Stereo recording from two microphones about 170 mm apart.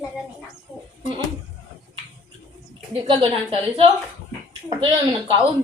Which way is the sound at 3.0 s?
30° right (ahead or behind).